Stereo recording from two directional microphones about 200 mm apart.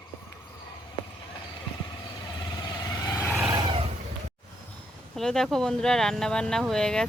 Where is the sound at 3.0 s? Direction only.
15° left (ahead or behind).